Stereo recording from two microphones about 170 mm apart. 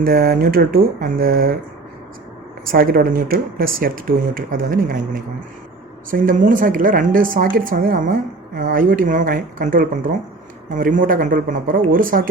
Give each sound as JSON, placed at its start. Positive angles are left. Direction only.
{"t": 0.0, "sound": "a woman's voice", "side_deg": -60}
{"t": 2.6, "sound": "a woman's voice", "side_deg": -60}